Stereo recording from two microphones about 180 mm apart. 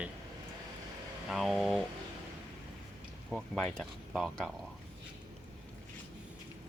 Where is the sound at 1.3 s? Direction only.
Centre (ahead or behind).